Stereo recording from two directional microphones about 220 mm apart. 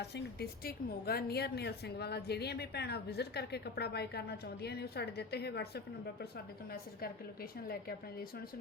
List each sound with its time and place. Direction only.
0.0 s a woman's voice: 50° left (ahead or behind)